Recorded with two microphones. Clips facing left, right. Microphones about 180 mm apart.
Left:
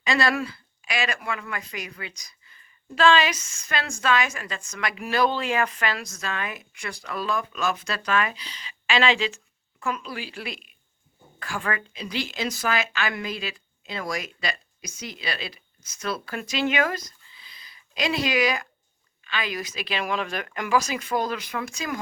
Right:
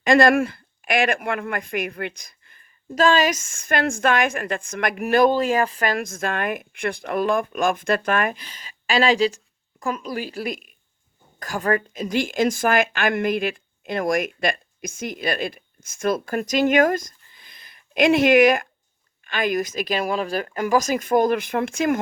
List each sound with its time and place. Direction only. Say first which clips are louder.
0.0 s a woman's voice: right 8 dB; 50° right (ahead or behind)
2.9 s a woman's voice: right 2 dB; 40° right (ahead or behind)